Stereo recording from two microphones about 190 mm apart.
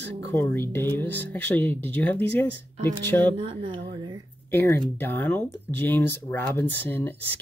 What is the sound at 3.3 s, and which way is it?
Speech, 25° right (ahead or behind).